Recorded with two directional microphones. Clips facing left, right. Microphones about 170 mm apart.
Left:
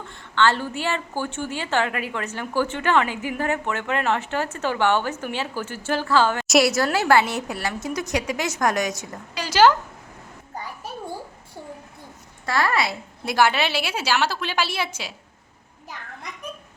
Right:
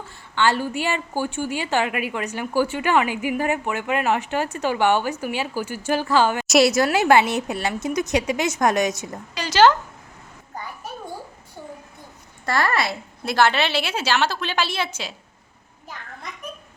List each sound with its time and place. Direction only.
0.0 s a woman's voice: 10° right (ahead or behind)
9.3 s a woman's voice: 10° left (ahead or behind)
12.5 s a woman's voice: 5° left (ahead or behind)